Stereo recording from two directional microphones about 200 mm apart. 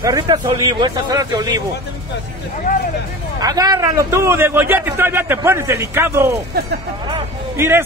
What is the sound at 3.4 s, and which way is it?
A man's voice, 20° right (ahead or behind).